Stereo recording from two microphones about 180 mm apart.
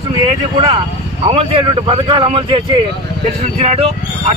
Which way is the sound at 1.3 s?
30° right (ahead or behind).